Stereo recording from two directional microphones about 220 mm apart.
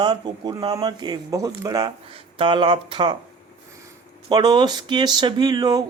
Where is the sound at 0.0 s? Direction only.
20° right (ahead or behind).